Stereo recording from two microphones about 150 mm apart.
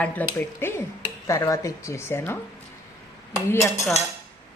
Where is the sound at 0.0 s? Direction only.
10° left (ahead or behind).